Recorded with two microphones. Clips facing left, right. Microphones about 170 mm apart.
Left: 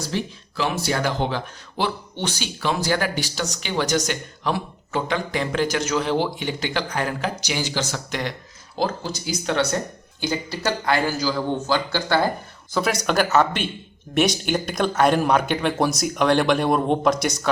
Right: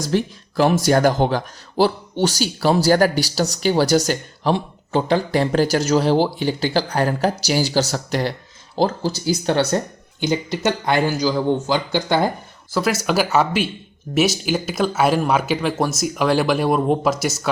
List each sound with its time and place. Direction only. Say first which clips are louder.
0.0 s speech: right 6 dB; 45° right (ahead or behind)
10.2 s speech: right 5 dB; 20° right (ahead or behind)
12.7 s speech: right 2 dB; 5° right (ahead or behind)